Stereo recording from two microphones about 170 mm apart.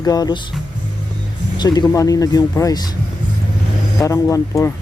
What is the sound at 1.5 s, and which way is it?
Speech, 25° left (ahead or behind).